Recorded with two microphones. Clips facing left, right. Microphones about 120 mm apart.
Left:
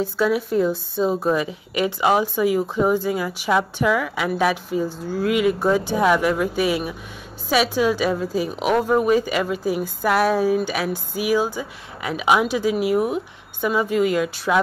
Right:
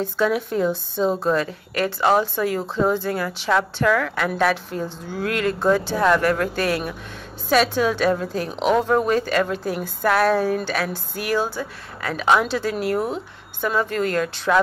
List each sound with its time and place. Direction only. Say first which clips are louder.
0.0 s a woman's voice: left 1 dB; 5° left (ahead or behind)